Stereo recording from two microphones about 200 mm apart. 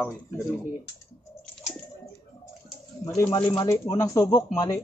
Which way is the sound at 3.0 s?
15° left (ahead or behind).